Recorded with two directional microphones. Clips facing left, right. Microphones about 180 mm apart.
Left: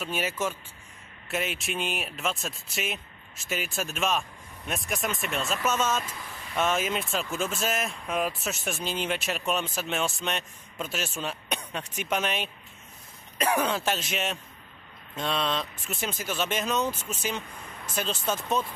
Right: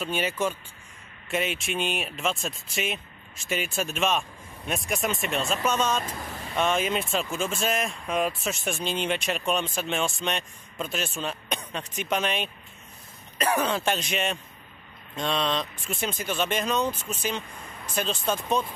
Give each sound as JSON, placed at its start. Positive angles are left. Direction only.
{"t": 0.0, "sound": "speech", "side_deg": 5}
{"t": 6.0, "sound": "speech", "side_deg": -45}
{"t": 6.5, "sound": "speech", "side_deg": 5}